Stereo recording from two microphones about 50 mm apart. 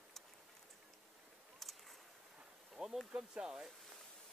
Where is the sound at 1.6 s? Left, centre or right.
Centre.